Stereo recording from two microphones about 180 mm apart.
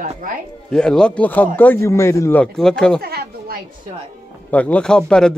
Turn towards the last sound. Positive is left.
turn(degrees=5)  # may be behind; listen again after turning